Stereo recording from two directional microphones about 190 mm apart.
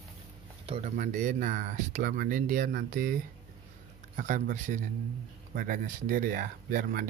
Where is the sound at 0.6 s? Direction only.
35° right (ahead or behind).